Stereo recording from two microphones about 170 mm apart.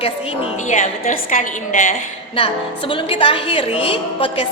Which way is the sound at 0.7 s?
50° left (ahead or behind).